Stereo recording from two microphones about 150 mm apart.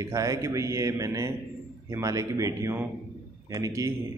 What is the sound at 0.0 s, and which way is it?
A man's voice, 20° right (ahead or behind).